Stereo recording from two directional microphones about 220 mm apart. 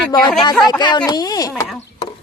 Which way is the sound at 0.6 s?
20° left (ahead or behind).